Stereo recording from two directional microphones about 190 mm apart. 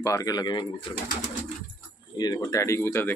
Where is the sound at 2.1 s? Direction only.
20° left (ahead or behind).